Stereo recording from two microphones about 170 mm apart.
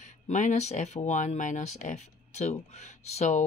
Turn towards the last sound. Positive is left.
turn(degrees=45)  # may be behind; listen again after turning